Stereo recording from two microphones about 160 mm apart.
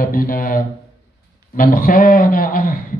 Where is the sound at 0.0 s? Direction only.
65° left (ahead or behind).